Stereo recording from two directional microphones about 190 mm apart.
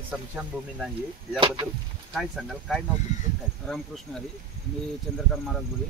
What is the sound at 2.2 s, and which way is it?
Speech, centre (ahead or behind).